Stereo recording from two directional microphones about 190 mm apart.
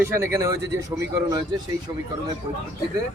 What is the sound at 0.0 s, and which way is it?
A man's voice, 15° right (ahead or behind).